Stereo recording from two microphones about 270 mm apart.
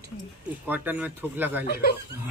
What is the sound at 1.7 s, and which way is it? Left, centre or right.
Speech, left.